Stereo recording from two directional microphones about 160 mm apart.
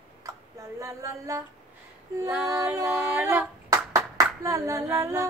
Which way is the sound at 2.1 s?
15° right (ahead or behind).